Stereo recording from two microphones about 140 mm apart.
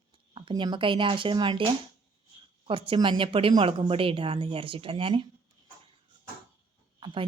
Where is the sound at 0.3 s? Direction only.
35° right (ahead or behind).